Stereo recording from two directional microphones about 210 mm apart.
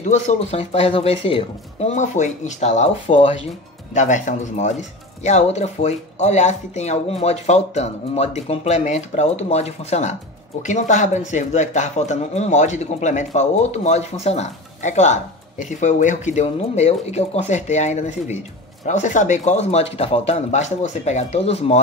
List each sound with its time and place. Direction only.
0.0 s speech: 35° left (ahead or behind)